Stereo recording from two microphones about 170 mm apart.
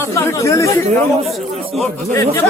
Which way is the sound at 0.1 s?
15° left (ahead or behind).